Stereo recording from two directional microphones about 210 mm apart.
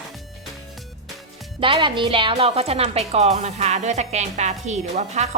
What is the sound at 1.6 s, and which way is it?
A woman's voice, 25° right (ahead or behind).